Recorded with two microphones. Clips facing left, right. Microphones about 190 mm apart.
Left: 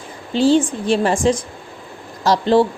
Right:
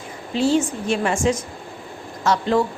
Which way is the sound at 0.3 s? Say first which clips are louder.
Left 4 dB; 30° left (ahead or behind).